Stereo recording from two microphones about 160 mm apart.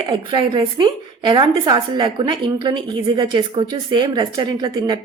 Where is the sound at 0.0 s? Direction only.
30° right (ahead or behind).